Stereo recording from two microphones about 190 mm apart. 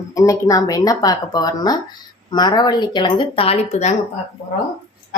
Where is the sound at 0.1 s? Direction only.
20° left (ahead or behind); by 3.9 s 35° left (ahead or behind).